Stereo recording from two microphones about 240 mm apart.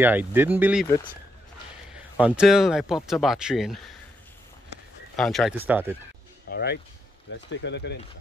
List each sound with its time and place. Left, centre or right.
0.0 s speech: centre
2.1 s speech: centre
5.1 s speech: centre
6.5 s speech: left